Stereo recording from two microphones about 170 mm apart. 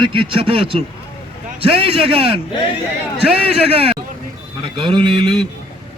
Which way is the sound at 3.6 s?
35° right (ahead or behind).